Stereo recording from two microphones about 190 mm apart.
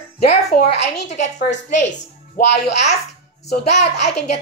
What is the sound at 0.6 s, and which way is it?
Speech, 60° left (ahead or behind).